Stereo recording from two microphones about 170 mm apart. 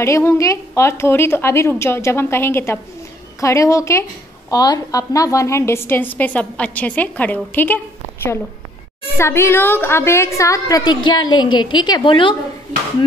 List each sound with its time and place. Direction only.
0.0 s a woman's voice: 15° left (ahead or behind)